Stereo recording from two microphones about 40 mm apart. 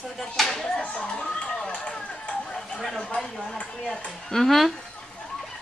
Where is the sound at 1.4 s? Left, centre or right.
Left.